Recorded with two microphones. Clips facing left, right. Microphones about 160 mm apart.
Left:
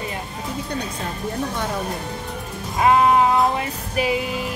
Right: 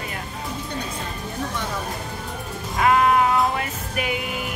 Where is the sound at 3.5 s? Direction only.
30° left (ahead or behind).